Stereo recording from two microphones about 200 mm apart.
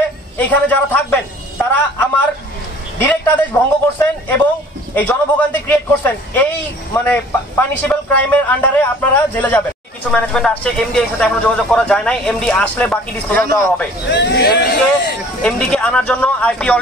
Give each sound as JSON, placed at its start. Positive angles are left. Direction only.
{"t": 0.4, "sound": "a man's voice", "side_deg": 10}
{"t": 14.1, "sound": "speech", "side_deg": 60}
{"t": 15.4, "sound": "a man's voice", "side_deg": 5}